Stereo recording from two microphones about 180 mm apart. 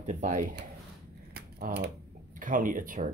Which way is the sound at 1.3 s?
60° right (ahead or behind).